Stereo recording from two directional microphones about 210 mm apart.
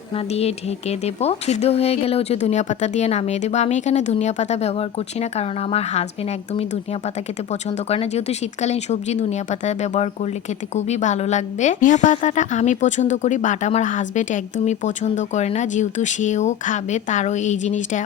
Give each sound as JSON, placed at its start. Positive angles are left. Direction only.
{"t": 0.3, "sound": "a woman's voice", "side_deg": 30}
{"t": 7.9, "sound": "a woman's voice", "side_deg": 30}